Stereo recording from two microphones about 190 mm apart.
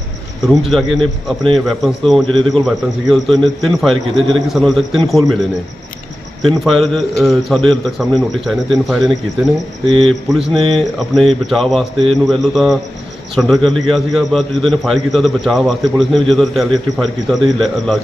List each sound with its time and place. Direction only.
0.4 s a man's voice: centre (ahead or behind)
6.4 s a man's voice: centre (ahead or behind)
9.9 s a man's voice: 30° right (ahead or behind)
10.3 s a man's voice: centre (ahead or behind)